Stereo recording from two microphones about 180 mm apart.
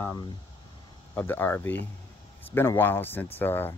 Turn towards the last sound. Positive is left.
turn(degrees=10)  # may be behind; listen again after turning